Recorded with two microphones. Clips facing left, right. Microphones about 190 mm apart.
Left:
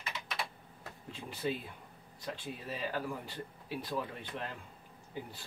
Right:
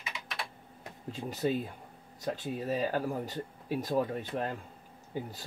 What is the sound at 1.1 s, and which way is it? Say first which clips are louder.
Speech: right 6 dB; 40° right (ahead or behind).